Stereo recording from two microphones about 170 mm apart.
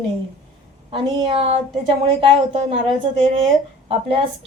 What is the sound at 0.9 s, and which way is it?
A woman's voice, 30° right (ahead or behind).